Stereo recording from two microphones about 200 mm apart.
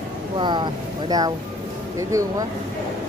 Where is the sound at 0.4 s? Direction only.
25° right (ahead or behind).